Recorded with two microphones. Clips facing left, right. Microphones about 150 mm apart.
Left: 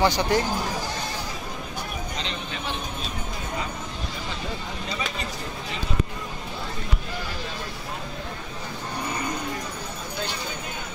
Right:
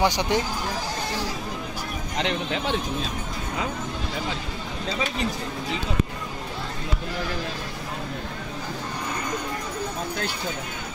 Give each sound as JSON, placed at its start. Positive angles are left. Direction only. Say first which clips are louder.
{"t": 0.0, "sound": "speech", "louder": "left 1 dB", "side_deg": -15}
{"t": 2.1, "sound": "speech", "louder": "right 7 dB", "side_deg": -75}